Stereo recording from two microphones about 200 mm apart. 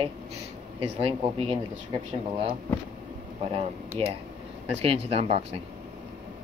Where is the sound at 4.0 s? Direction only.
25° right (ahead or behind).